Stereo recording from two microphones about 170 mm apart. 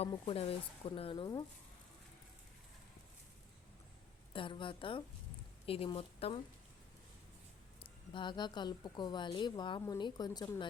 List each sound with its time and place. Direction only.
0.0 s speech: 35° left (ahead or behind)
4.3 s speech: 30° left (ahead or behind)
7.8 s a woman's voice: 30° left (ahead or behind)